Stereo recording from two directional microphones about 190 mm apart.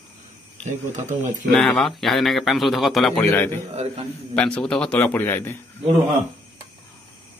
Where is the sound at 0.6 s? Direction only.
40° right (ahead or behind).